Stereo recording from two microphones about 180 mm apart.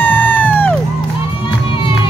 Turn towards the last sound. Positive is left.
turn(degrees=10)  # may be behind; listen again after turning